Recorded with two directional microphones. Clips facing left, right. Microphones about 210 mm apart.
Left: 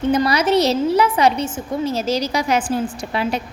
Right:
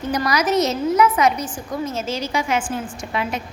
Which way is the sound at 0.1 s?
25° left (ahead or behind).